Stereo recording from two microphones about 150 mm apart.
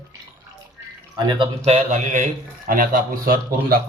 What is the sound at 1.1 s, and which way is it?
Speech, 30° right (ahead or behind).